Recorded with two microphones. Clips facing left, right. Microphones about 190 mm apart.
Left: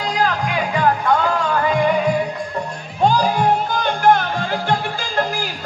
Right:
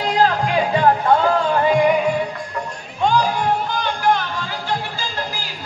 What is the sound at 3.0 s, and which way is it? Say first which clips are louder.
Music: left 1 dB; 40° left (ahead or behind).